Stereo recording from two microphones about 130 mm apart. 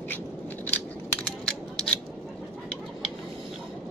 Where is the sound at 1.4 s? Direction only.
5° left (ahead or behind).